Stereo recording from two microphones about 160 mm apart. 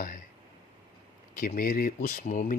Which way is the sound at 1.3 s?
65° left (ahead or behind).